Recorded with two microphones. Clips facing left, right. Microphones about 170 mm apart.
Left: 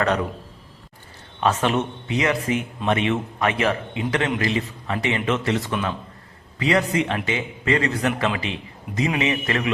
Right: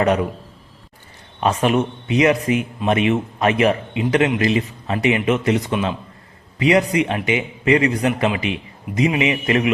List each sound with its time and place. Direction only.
1.4 s a man's voice: 15° right (ahead or behind)